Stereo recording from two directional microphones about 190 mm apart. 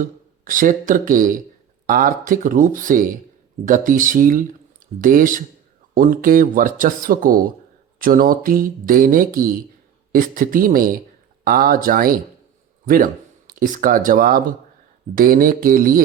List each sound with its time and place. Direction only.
0.0 s speech: 45° right (ahead or behind)